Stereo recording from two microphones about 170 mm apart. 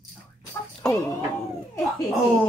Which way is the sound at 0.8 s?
5° left (ahead or behind).